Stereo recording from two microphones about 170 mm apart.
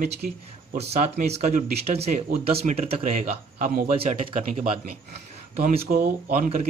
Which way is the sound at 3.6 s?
55° right (ahead or behind).